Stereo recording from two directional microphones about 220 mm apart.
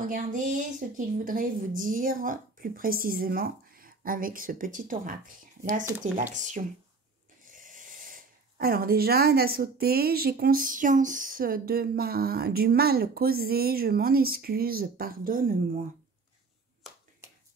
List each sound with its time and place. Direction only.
0.0 s a woman's voice: 35° right (ahead or behind)